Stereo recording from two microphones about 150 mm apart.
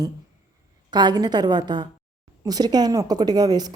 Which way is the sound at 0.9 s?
30° right (ahead or behind).